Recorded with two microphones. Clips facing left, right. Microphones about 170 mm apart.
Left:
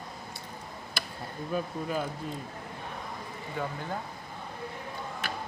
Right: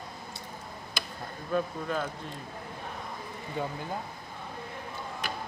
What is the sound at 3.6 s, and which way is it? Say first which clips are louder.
Speech: right 1 dB; 20° right (ahead or behind).